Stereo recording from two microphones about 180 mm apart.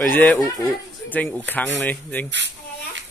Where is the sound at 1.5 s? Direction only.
10° left (ahead or behind).